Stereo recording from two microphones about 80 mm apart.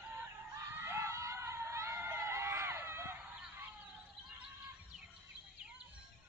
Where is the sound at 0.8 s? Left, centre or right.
Right.